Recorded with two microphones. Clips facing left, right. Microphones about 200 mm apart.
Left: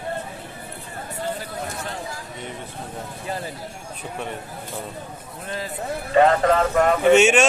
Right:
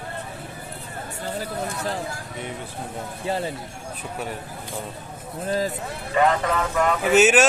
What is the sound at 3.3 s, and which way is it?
Speech, 30° right (ahead or behind).